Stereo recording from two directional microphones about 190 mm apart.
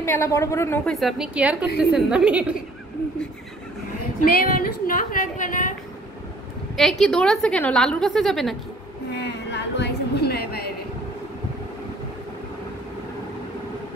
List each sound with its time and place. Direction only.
0.0 s a woman's voice: 15° left (ahead or behind)
0.9 s a woman's voice: centre (ahead or behind)
4.2 s a woman's voice: 45° left (ahead or behind)
6.8 s a woman's voice: centre (ahead or behind)
9.2 s a sound: 65° left (ahead or behind)